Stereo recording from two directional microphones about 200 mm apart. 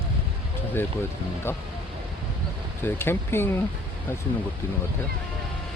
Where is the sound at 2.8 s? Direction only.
10° left (ahead or behind).